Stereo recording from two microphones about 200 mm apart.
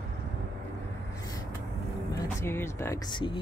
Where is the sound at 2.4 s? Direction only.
10° left (ahead or behind).